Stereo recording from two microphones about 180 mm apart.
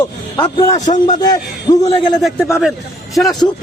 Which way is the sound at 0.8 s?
45° left (ahead or behind).